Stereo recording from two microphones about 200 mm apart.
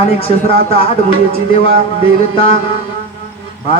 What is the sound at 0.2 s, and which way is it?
Speech, 30° left (ahead or behind).